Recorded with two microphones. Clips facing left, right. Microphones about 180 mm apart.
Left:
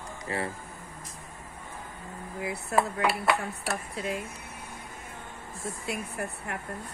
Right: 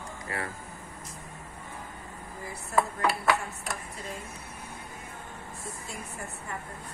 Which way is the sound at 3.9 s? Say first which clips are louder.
Left 7 dB; 75° left (ahead or behind).